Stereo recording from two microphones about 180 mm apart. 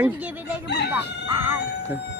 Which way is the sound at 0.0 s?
10° right (ahead or behind).